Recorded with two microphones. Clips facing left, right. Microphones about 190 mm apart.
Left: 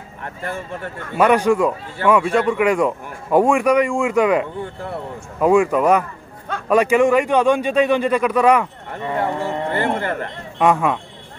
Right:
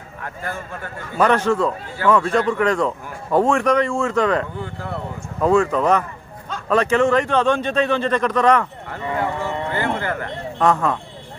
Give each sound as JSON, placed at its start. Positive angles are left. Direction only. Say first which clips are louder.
{"t": 1.1, "sound": "speech", "louder": "left 2 dB", "side_deg": 10}
{"t": 8.9, "sound": "a sound", "louder": "left 2 dB", "side_deg": 30}
{"t": 10.6, "sound": "speech", "louder": "left 2 dB", "side_deg": 10}